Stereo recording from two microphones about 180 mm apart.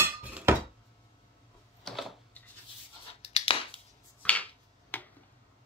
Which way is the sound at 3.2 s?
30° left (ahead or behind).